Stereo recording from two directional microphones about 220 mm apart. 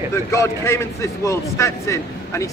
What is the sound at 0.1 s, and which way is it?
A man's voice, 15° left (ahead or behind).